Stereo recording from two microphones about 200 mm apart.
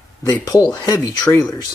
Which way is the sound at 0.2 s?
15° left (ahead or behind).